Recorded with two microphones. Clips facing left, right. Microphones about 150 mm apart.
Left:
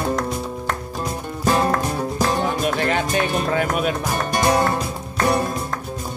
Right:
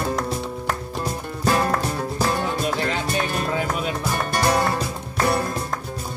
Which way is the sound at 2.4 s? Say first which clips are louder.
Left 3 dB; 65° left (ahead or behind).